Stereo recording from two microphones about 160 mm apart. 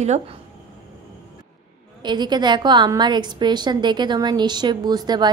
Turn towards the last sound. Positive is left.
turn(degrees=-25)  # may be behind; listen again after turning